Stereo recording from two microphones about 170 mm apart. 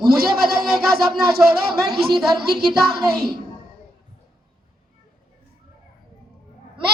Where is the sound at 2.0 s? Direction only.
70° right (ahead or behind).